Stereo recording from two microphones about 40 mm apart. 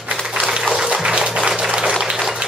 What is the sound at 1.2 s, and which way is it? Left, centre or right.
Music, centre.